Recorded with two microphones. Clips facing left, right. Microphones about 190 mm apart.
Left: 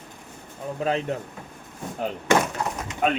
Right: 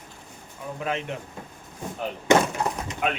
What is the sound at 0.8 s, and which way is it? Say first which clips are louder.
Speech: left 4 dB; 35° left (ahead or behind).